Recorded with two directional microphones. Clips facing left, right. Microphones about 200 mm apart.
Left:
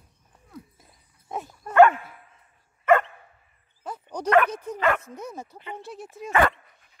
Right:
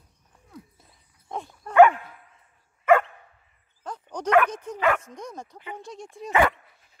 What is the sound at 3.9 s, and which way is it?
Bow-wow, 10° left (ahead or behind).